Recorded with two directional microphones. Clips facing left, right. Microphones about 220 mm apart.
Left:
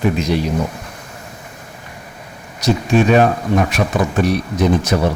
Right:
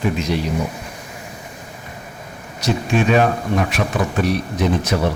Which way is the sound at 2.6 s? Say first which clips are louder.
Left 4 dB; 40° left (ahead or behind).